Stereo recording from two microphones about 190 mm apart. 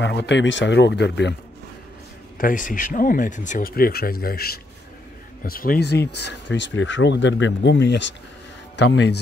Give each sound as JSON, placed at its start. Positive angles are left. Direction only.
{"t": 0.0, "sound": "speech", "side_deg": 65}
{"t": 2.3, "sound": "speech", "side_deg": 45}